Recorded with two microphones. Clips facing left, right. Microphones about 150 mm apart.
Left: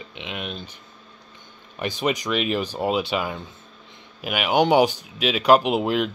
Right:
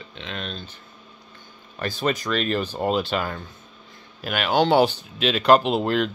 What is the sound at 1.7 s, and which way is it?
Speech, 15° left (ahead or behind).